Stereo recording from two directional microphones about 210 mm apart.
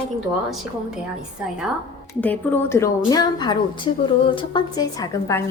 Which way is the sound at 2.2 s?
10° left (ahead or behind).